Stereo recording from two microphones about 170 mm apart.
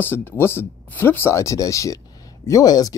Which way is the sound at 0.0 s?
10° left (ahead or behind).